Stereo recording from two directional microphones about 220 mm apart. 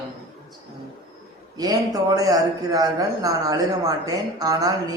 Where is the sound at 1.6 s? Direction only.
15° right (ahead or behind).